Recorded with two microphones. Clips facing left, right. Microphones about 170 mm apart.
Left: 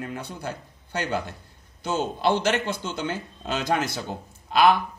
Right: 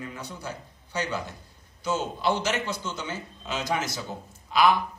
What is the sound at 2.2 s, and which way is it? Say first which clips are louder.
Speech: left 5 dB; 60° left (ahead or behind).